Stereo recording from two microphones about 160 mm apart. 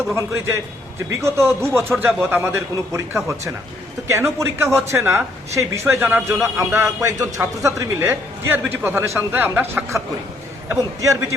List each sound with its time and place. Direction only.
0.1 s a man's voice: 15° right (ahead or behind)